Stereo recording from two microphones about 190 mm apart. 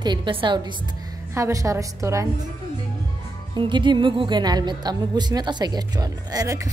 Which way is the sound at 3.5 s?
25° right (ahead or behind).